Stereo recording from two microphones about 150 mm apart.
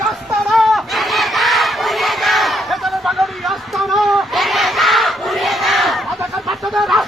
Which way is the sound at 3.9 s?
Centre (ahead or behind).